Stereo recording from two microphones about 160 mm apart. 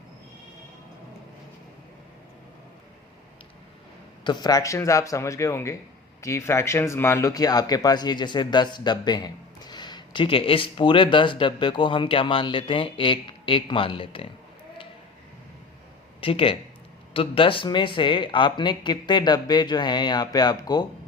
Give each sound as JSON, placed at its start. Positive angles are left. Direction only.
{"t": 4.2, "sound": "speech", "side_deg": 25}
{"t": 16.2, "sound": "speech", "side_deg": 35}